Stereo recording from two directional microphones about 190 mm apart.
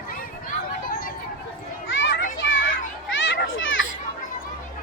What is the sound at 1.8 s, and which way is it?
Children playing, 80° left.